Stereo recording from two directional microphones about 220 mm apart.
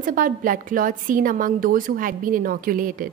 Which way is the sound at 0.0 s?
40° right (ahead or behind).